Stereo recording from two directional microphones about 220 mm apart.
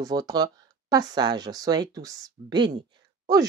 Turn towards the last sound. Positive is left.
turn(degrees=-15)  # may be behind; listen again after turning